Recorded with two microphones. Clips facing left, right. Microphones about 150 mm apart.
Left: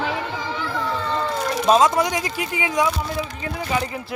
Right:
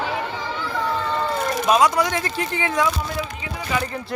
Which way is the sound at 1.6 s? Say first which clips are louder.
Left 2 dB; 25° left (ahead or behind).